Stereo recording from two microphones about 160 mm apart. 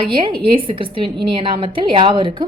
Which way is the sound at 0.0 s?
35° right (ahead or behind).